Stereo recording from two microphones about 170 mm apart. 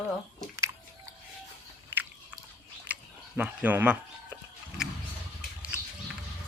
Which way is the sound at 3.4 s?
10° right (ahead or behind).